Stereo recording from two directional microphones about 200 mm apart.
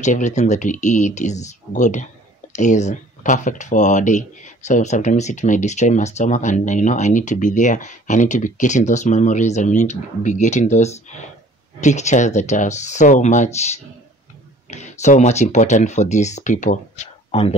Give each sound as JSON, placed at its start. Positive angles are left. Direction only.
{"t": 0.0, "sound": "speech", "side_deg": 35}